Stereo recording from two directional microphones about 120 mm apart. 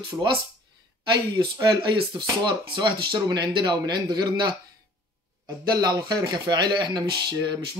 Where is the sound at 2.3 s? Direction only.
35° right (ahead or behind).